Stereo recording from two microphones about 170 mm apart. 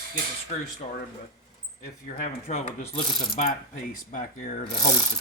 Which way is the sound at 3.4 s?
45° left (ahead or behind).